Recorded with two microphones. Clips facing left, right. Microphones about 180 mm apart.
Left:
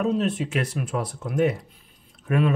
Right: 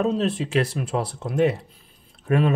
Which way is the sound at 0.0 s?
30° right (ahead or behind).